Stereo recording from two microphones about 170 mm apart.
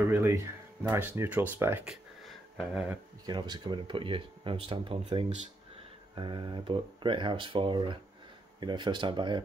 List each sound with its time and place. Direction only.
0.1 s speech: 15° right (ahead or behind)
2.2 s a sound: centre (ahead or behind)
3.3 s speech: 25° right (ahead or behind)